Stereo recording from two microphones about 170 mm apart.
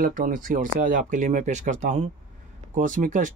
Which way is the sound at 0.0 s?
55° right (ahead or behind).